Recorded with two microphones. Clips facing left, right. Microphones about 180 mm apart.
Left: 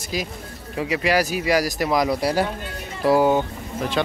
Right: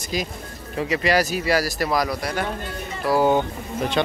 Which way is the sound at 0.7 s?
10° left (ahead or behind).